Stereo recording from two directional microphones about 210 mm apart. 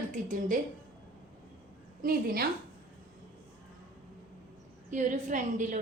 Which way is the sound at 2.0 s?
45° right (ahead or behind).